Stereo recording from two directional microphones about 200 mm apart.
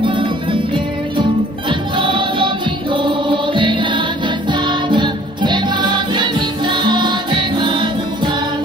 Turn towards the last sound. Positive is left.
turn(degrees=-25)  # may be behind; listen again after turning